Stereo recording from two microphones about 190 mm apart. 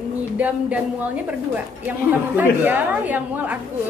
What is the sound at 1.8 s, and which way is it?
A woman's voice, 10° right (ahead or behind).